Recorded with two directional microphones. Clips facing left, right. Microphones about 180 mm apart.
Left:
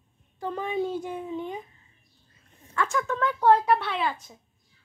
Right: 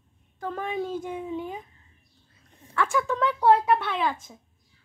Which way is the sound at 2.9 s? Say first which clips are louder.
Right 2 dB; 15° right (ahead or behind).